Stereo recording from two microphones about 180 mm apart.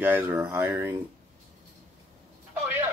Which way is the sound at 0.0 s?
10° right (ahead or behind).